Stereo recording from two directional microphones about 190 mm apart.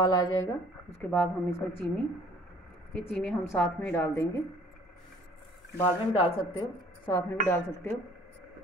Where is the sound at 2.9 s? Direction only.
5° left (ahead or behind).